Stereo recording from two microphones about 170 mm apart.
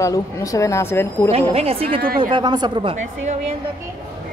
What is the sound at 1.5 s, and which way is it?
Speech, 35° right (ahead or behind).